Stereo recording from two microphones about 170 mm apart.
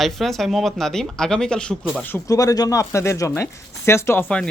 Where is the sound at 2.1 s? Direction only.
20° left (ahead or behind).